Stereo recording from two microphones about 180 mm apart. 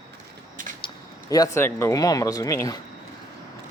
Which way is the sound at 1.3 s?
20° left (ahead or behind).